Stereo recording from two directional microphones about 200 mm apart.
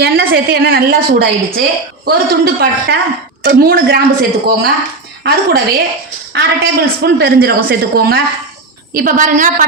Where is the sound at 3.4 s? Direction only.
50° right (ahead or behind).